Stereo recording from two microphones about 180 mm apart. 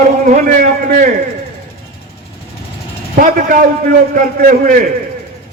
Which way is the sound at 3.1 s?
50° right (ahead or behind).